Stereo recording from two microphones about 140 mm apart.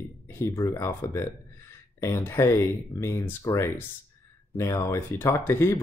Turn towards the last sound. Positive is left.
turn(degrees=15)  # may be behind; listen again after turning